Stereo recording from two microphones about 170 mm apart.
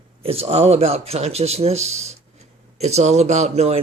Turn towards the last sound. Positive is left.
turn(degrees=-40)  # may be behind; listen again after turning